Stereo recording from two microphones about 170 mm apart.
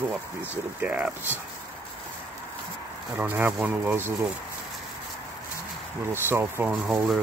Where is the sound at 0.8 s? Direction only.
10° right (ahead or behind).